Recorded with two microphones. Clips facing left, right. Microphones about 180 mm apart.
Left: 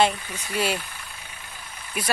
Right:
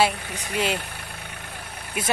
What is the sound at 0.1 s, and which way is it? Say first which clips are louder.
Speech: right 1 dB; 70° right (ahead or behind).